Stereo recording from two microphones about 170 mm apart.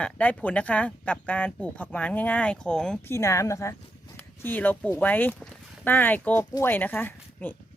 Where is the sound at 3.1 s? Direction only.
15° left (ahead or behind).